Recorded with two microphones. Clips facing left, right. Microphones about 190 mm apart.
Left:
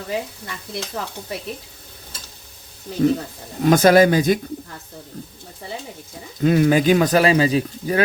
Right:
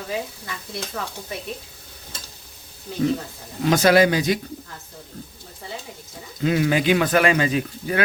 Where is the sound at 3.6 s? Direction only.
50° left (ahead or behind).